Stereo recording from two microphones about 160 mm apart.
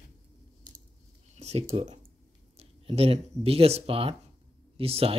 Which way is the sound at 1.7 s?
45° right (ahead or behind).